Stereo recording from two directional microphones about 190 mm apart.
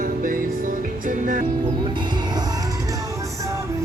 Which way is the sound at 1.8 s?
25° right (ahead or behind).